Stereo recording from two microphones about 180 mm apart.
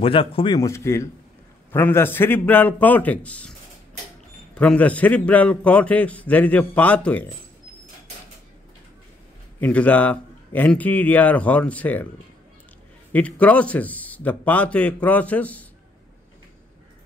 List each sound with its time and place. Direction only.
0.0 s a man's voice: 30° left (ahead or behind)
0.6 s a man's voice: 15° left (ahead or behind)
4.6 s a man's voice: 5° left (ahead or behind)
9.6 s a man's voice: 10° left (ahead or behind)
13.1 s a man's voice: 10° left (ahead or behind)